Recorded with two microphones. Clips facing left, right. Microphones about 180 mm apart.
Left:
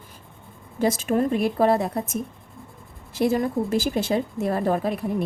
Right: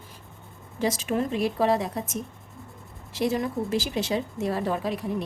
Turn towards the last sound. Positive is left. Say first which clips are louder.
# left 4 dB
turn(degrees=55)  # may be behind; listen again after turning